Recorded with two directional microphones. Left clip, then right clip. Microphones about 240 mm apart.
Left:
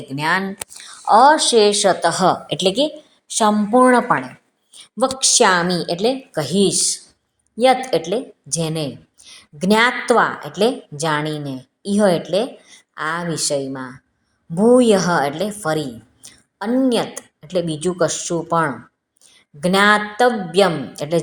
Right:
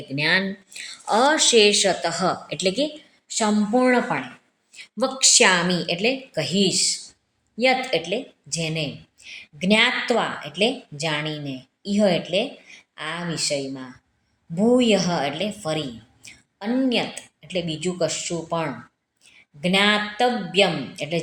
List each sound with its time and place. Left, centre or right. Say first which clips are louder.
0.2 s speech: left 2 dB; centre
0.7 s a woman's voice: left 10 dB; centre; by 21.2 s left